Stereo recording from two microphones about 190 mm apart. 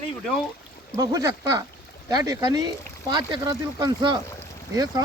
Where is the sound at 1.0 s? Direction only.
15° right (ahead or behind).